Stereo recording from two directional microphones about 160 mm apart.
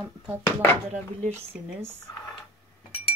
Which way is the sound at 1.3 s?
15° right (ahead or behind).